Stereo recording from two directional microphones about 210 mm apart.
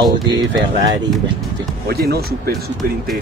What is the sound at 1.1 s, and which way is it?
Speech, centre (ahead or behind).